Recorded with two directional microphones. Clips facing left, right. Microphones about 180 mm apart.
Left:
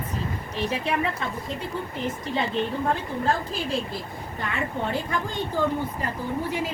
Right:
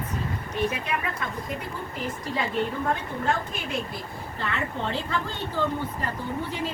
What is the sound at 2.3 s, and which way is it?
Speech, 20° left (ahead or behind).